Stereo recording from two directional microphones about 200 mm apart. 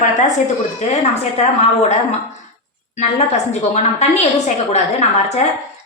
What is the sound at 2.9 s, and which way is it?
A woman's voice, 35° left (ahead or behind).